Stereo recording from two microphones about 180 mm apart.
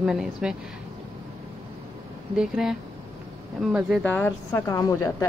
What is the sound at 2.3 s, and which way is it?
Speech, 5° right (ahead or behind).